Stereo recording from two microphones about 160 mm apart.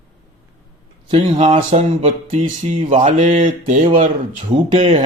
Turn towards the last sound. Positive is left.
turn(degrees=-50)  # may be behind; listen again after turning